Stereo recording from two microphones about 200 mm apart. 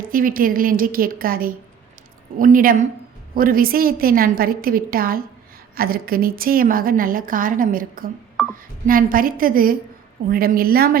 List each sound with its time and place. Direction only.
0.1 s a woman's voice: 45° right (ahead or behind)